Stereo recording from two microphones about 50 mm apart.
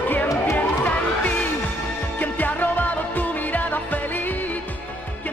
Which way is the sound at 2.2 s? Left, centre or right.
Left.